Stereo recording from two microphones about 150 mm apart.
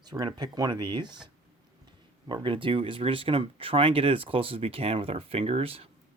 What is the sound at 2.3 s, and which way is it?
Speech, 35° right (ahead or behind).